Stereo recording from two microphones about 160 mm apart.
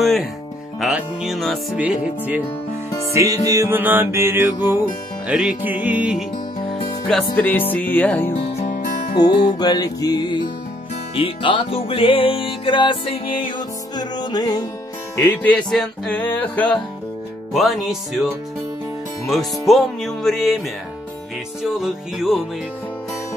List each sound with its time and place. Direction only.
0.0 s speech: centre (ahead or behind)
1.8 s music: 10° right (ahead or behind)
3.1 s music: 20° right (ahead or behind)
7.1 s music: 5° left (ahead or behind)
8.4 s music: 45° left (ahead or behind)
9.6 s music: 25° left (ahead or behind)
15.1 s music: 10° left (ahead or behind)
17.5 s speech: centre (ahead or behind)
21.6 s speech: centre (ahead or behind)